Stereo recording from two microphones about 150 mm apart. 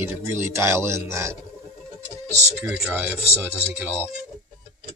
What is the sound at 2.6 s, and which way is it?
Speech, 10° right (ahead or behind).